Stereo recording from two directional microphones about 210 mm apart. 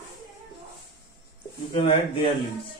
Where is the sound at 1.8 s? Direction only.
25° left (ahead or behind).